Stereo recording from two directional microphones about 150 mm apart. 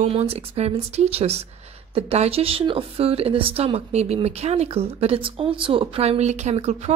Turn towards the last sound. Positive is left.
turn(degrees=-45)  # may be behind; listen again after turning